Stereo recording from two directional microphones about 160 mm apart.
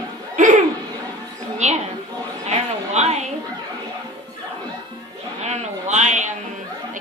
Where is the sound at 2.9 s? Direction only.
45° right (ahead or behind).